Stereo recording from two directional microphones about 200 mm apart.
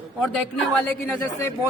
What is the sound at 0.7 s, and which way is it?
Speech, 5° left (ahead or behind).